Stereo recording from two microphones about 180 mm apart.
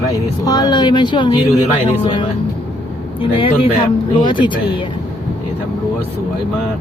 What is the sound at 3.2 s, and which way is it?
Speech, 30° left (ahead or behind).